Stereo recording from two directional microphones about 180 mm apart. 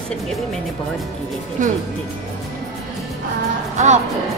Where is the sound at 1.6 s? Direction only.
45° right (ahead or behind).